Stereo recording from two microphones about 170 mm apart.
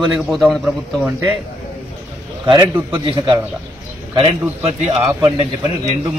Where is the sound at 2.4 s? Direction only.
30° right (ahead or behind).